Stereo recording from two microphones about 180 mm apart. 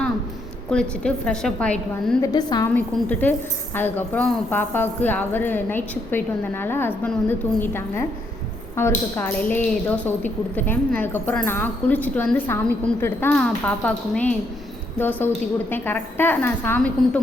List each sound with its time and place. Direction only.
0.7 s a woman's voice: 5° left (ahead or behind)
2.2 s a woman's voice: 20° left (ahead or behind)
2.6 s speech: 10° left (ahead or behind)